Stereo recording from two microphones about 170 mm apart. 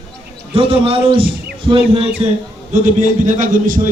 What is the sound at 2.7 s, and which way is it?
A man's voice, 45° right (ahead or behind).